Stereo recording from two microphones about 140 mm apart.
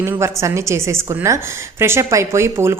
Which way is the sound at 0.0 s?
20° right (ahead or behind).